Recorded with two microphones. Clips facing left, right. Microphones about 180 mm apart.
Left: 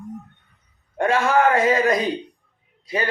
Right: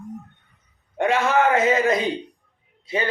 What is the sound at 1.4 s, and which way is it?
Speech, 25° right (ahead or behind).